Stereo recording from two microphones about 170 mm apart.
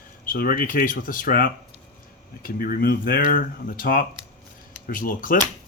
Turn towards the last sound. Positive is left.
turn(degrees=55)  # may be behind; listen again after turning